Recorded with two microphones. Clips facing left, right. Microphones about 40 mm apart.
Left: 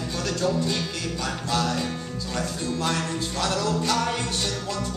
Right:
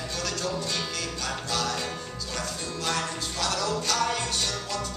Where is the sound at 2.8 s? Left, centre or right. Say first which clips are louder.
Even; centre.